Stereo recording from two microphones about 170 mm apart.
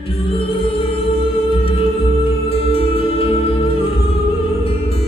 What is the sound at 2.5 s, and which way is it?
Music, 35° left (ahead or behind).